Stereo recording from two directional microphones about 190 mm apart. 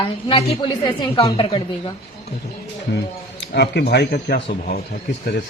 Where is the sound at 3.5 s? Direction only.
60° left (ahead or behind).